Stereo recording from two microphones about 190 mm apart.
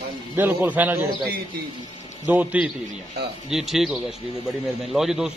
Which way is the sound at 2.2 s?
10° right (ahead or behind).